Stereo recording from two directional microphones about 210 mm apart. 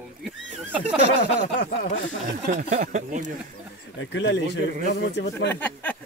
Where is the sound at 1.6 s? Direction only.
45° left (ahead or behind).